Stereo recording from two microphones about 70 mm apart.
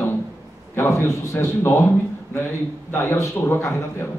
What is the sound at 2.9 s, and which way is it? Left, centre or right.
Speech, left.